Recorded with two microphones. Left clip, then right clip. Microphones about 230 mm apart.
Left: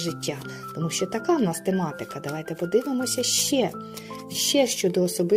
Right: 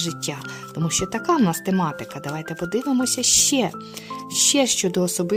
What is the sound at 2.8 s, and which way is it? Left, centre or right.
Speech, right.